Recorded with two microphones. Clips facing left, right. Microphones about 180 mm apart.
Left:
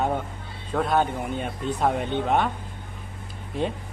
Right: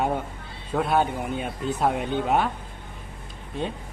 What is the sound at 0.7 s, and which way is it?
Speech, 10° right (ahead or behind).